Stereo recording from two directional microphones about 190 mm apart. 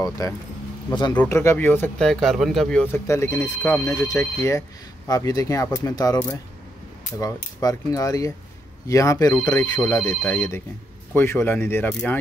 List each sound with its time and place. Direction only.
0.2 s speech: 20° left (ahead or behind)